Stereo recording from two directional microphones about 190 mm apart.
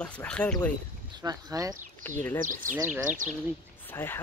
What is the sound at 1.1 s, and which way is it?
Speech, 20° right (ahead or behind).